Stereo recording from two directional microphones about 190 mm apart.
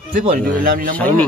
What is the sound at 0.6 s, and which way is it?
Speech, 45° right (ahead or behind).